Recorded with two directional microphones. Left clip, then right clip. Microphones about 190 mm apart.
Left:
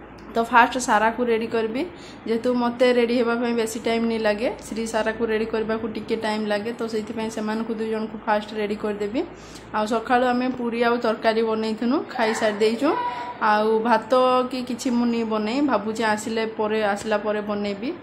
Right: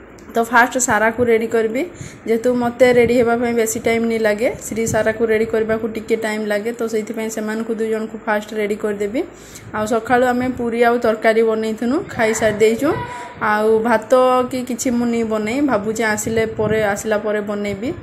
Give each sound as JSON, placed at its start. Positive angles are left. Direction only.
{"t": 0.3, "sound": "a woman's voice", "side_deg": -15}